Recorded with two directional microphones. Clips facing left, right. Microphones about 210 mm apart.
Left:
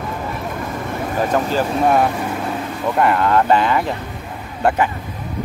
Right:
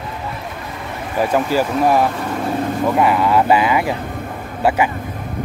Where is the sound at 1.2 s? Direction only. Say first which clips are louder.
Right 2 dB; 10° right (ahead or behind).